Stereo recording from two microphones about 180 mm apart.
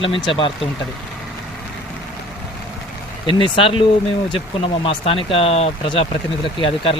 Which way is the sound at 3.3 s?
30° left (ahead or behind).